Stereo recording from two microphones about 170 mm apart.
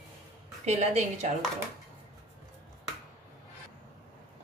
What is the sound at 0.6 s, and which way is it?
Speech, 45° right (ahead or behind).